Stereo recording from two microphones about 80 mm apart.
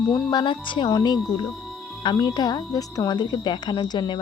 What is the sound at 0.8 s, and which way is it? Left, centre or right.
Speech, left.